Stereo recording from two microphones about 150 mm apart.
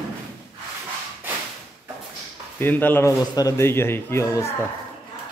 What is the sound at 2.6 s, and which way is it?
Speech, 15° left (ahead or behind).